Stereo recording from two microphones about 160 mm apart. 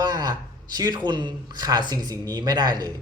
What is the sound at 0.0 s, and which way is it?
A man's voice, 25° right (ahead or behind).